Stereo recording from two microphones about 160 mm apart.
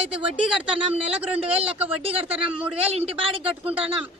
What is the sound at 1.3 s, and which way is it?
Speech, 35° right (ahead or behind).